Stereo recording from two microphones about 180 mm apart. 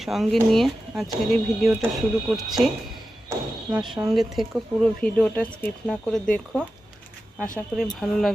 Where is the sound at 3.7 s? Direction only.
5° right (ahead or behind).